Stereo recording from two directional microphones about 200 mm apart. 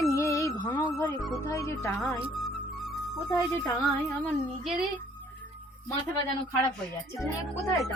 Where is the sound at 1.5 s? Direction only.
15° left (ahead or behind).